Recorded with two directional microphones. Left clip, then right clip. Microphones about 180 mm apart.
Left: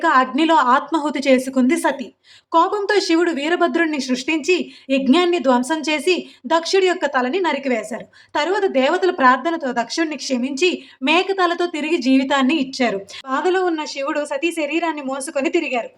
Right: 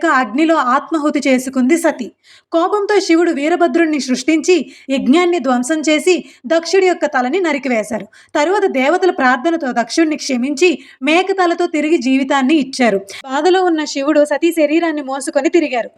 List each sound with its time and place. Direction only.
0.0 s a woman's voice: 20° right (ahead or behind)